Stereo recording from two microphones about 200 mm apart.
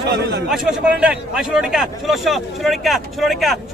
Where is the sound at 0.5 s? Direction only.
5° right (ahead or behind).